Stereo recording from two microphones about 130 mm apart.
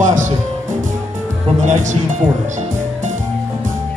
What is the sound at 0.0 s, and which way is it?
Music, 70° right (ahead or behind).